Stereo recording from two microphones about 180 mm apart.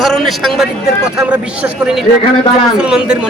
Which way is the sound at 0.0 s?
Centre (ahead or behind).